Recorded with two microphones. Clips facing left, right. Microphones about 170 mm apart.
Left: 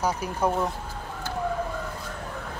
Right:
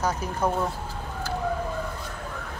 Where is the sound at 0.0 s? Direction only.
10° left (ahead or behind).